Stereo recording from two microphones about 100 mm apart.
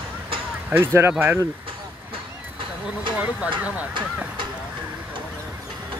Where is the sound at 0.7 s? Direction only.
25° right (ahead or behind).